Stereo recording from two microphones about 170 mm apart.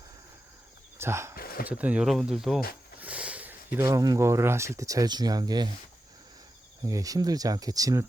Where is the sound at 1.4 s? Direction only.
60° left (ahead or behind).